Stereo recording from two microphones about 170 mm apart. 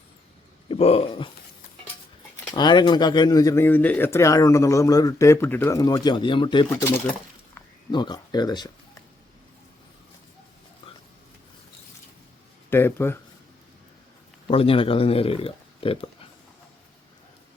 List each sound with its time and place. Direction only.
0.7 s speech: 35° left (ahead or behind)
2.5 s speech: 25° left (ahead or behind)
7.9 s speech: 25° left (ahead or behind)
12.7 s speech: 15° left (ahead or behind)
14.4 s speech: 35° left (ahead or behind)